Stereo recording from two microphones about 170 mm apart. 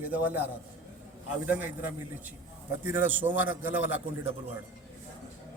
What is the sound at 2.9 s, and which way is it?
Speech, 10° right (ahead or behind).